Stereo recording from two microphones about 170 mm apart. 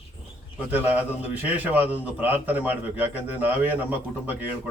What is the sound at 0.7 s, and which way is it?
A man's voice, 10° right (ahead or behind).